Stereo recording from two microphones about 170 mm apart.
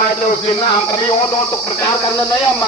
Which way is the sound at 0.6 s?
25° left (ahead or behind).